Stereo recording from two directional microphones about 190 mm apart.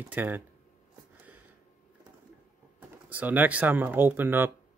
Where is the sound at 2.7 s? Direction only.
10° right (ahead or behind).